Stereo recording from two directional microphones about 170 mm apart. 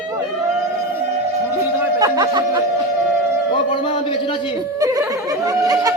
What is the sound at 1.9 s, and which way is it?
Speech, 25° right (ahead or behind).